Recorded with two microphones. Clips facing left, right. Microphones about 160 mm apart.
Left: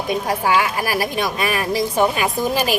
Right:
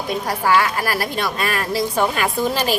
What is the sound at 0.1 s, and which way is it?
A woman's voice, 15° left (ahead or behind).